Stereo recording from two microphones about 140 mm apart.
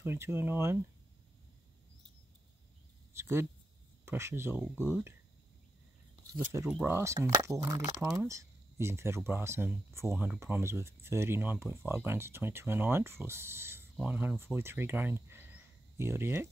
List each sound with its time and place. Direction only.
0.0 s speech: 20° right (ahead or behind)
3.1 s speech: 20° right (ahead or behind)
6.7 s speech: 15° right (ahead or behind)